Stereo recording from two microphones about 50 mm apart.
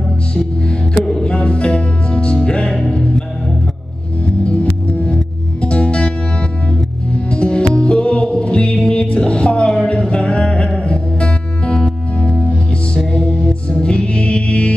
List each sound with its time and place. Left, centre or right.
1.0 s music: centre
4.5 s music: left
7.2 s music: left